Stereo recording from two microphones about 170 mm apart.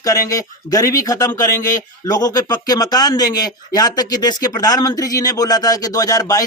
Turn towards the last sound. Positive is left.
turn(degrees=20)  # may be behind; listen again after turning